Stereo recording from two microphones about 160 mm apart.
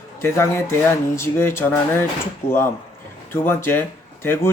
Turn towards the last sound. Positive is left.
turn(degrees=15)  # may be behind; listen again after turning